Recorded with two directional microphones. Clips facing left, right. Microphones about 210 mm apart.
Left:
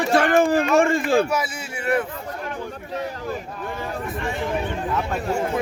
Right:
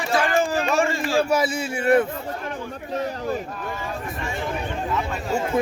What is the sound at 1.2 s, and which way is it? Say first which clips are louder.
Speech: right 4 dB; 30° right (ahead or behind).